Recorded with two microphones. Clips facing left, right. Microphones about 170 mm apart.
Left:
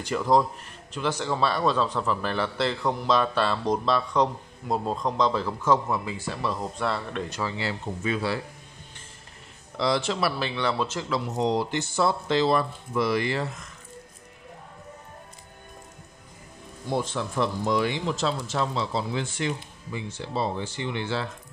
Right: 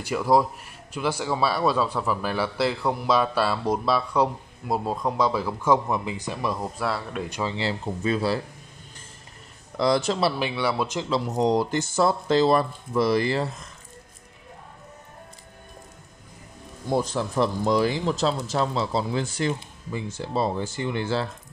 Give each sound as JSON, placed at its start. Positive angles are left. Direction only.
{"t": 0.0, "sound": "speech", "side_deg": -10}
{"t": 7.5, "sound": "speech", "side_deg": -30}
{"t": 9.8, "sound": "speech", "side_deg": -45}
{"t": 10.4, "sound": "speech", "side_deg": -10}
{"t": 11.1, "sound": "speech", "side_deg": -40}
{"t": 16.9, "sound": "speech", "side_deg": -40}